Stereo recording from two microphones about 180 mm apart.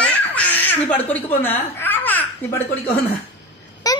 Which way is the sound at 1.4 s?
10° left (ahead or behind).